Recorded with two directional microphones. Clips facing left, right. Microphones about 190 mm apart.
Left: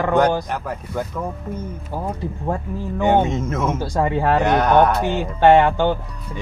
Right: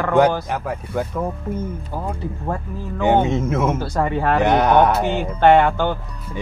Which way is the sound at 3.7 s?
10° left (ahead or behind).